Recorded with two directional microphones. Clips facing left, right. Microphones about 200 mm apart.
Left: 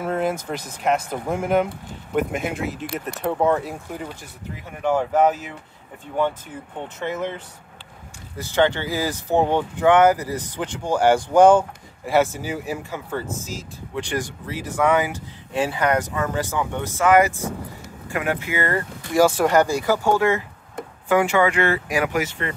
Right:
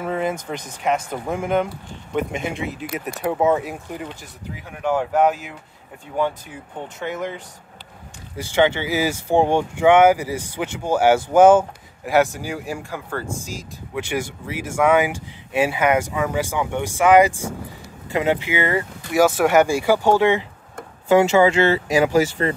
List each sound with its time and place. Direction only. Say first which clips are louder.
0.0 s speech: even; centre (ahead or behind)
7.0 s speech: left 1 dB; centre (ahead or behind)
8.5 s speech: right 2 dB; 10° right (ahead or behind)
13.9 s speech: right 1 dB; 10° right (ahead or behind)
18.7 s speech: right 2 dB; 10° right (ahead or behind); by 22.5 s 30° right (ahead or behind)